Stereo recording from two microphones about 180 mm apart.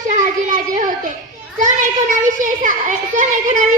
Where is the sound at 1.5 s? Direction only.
45° right (ahead or behind).